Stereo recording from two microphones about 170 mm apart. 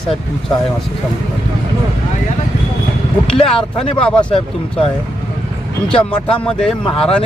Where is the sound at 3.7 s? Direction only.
30° left (ahead or behind).